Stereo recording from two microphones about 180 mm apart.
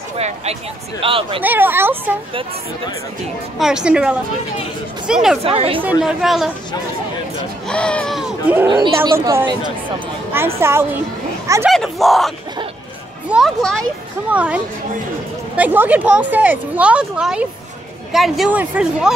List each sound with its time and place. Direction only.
1.0 s speech: 30° right (ahead or behind)
1.4 s speech: 10° right (ahead or behind)
3.5 s speech: 5° right (ahead or behind)
5.4 s speech: 30° right (ahead or behind)
5.8 s speech: 5° right (ahead or behind)
7.6 s speech: 5° left (ahead or behind)
8.6 s speech: 25° right (ahead or behind)
10.6 s speech: 15° right (ahead or behind)
11.7 s speech: centre (ahead or behind)
13.3 s speech: centre (ahead or behind)